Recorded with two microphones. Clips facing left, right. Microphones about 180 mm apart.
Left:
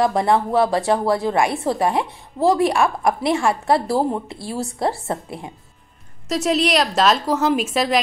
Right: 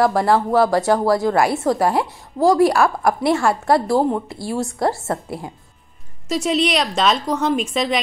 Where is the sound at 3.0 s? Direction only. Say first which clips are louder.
Right 1 dB; 25° left (ahead or behind).